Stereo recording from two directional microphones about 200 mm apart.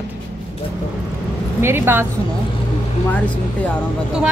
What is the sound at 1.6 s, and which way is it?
Speech, 10° right (ahead or behind).